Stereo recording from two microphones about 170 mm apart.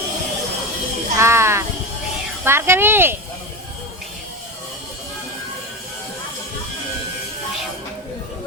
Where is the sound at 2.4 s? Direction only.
15° right (ahead or behind).